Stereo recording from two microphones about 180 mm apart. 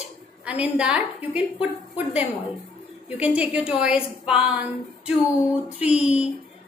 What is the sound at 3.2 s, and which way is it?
A woman's voice, 5° right (ahead or behind).